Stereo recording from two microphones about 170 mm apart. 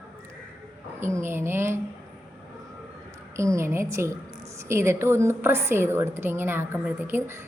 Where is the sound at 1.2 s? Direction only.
15° right (ahead or behind).